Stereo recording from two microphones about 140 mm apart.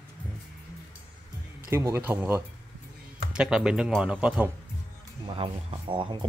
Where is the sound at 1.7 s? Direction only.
20° right (ahead or behind).